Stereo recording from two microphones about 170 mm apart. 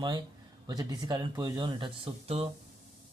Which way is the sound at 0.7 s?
25° right (ahead or behind).